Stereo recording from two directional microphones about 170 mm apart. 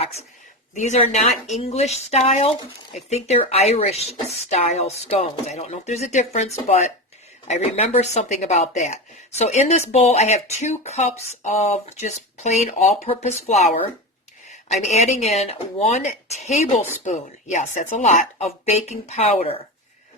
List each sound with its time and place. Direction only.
0.8 s speech: 45° left (ahead or behind)